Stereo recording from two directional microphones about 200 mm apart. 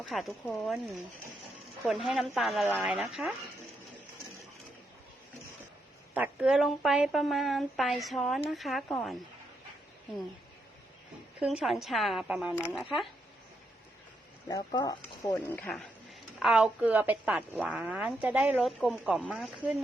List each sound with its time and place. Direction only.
0.0 s a woman's voice: centre (ahead or behind)
6.1 s a woman's voice: 5° right (ahead or behind)
11.3 s a woman's voice: 5° right (ahead or behind)
14.4 s speech: 20° left (ahead or behind)
15.5 s a woman's voice: 5° left (ahead or behind)